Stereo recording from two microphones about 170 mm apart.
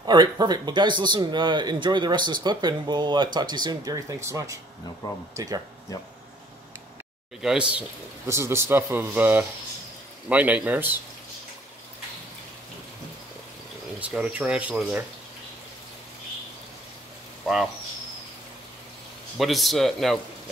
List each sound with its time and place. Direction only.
0.0 s speech: 25° right (ahead or behind)
7.4 s a man's voice: 5° right (ahead or behind)
13.9 s a man's voice: 10° right (ahead or behind)
17.4 s a sound: centre (ahead or behind)
19.3 s speech: centre (ahead or behind)